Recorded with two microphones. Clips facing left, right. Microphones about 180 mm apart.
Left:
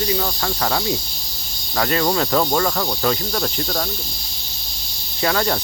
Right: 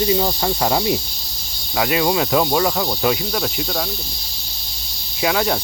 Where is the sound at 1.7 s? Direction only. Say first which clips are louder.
Right 1 dB; 10° right (ahead or behind).